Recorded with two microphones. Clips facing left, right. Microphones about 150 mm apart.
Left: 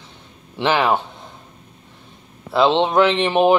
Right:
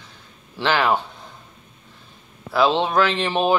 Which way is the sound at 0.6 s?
20° left (ahead or behind).